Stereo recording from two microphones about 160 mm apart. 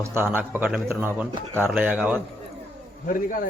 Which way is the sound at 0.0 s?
15° right (ahead or behind).